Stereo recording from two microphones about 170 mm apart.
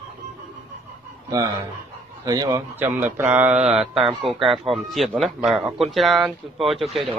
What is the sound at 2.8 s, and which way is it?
A man's voice, 10° right (ahead or behind).